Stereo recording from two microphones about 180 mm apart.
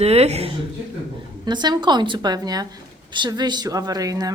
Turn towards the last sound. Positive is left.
turn(degrees=-20)  # may be behind; listen again after turning